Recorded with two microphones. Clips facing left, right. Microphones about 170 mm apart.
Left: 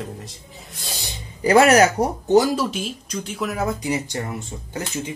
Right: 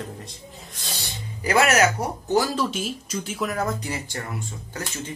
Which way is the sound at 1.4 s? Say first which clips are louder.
Left 6 dB; 30° left (ahead or behind).